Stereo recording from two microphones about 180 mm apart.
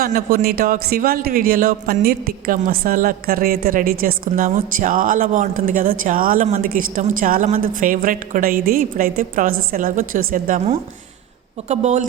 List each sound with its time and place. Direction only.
0.0 s a man's voice: 50° right (ahead or behind)